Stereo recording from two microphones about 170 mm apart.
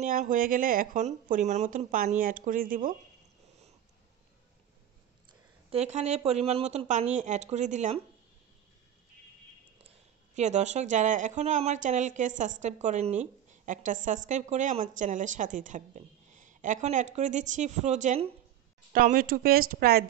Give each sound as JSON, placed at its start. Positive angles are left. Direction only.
{"t": 0.0, "sound": "speech", "side_deg": -50}
{"t": 1.0, "sound": "a woman's voice", "side_deg": -40}
{"t": 5.7, "sound": "speech", "side_deg": -40}
{"t": 10.3, "sound": "a woman's voice", "side_deg": -45}
{"t": 18.9, "sound": "speech", "side_deg": -55}